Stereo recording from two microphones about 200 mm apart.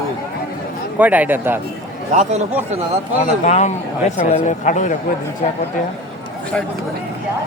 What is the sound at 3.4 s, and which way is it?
A man's voice, 35° left (ahead or behind).